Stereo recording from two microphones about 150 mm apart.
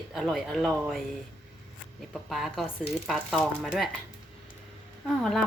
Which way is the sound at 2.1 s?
Centre (ahead or behind).